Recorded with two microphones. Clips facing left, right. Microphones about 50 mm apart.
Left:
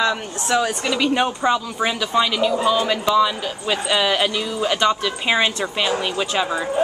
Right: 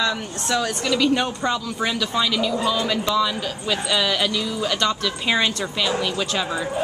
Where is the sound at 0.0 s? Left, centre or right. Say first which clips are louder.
Left 3 dB; centre.